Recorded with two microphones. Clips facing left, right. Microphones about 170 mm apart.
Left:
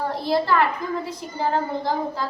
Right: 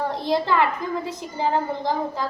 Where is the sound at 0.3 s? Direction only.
20° right (ahead or behind).